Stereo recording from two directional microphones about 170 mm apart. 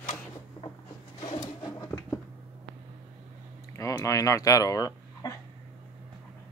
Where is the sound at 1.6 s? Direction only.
20° left (ahead or behind).